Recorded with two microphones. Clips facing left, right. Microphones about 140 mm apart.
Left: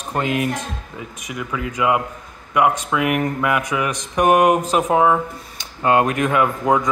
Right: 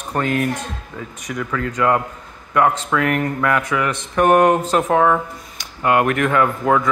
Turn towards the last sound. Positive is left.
turn(degrees=20)  # may be behind; listen again after turning